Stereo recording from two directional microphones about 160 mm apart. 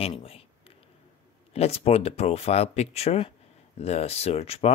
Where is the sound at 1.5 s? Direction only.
40° left (ahead or behind).